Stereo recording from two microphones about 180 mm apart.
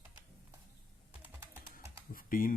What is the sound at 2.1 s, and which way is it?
Typing, 50° left (ahead or behind).